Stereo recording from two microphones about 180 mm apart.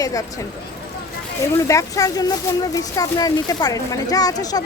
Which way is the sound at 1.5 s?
15° left (ahead or behind).